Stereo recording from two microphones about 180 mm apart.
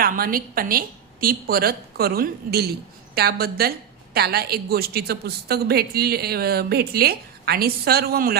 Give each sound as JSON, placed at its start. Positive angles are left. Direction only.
{"t": 0.0, "sound": "a woman's voice", "side_deg": -55}